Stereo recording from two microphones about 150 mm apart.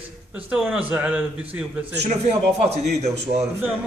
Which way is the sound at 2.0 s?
50° right (ahead or behind).